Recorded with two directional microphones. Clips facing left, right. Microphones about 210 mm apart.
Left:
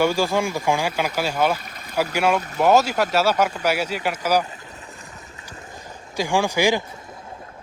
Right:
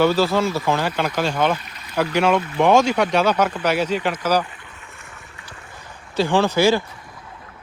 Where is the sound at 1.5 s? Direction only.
45° left (ahead or behind).